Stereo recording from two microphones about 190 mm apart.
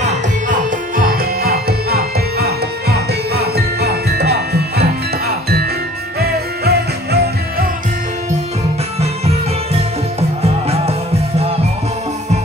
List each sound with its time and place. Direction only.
0.0 s music: 45° right (ahead or behind); by 4.8 s 60° right (ahead or behind)
6.1 s music: 55° right (ahead or behind)
10.7 s music: 30° right (ahead or behind)